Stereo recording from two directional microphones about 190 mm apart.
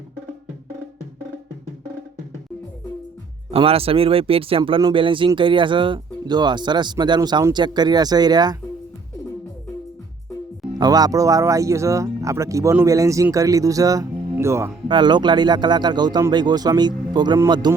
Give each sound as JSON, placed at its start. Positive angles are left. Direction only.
{"t": 3.5, "sound": "speech", "side_deg": -30}
{"t": 10.8, "sound": "speech", "side_deg": -20}
{"t": 14.8, "sound": "speech", "side_deg": -25}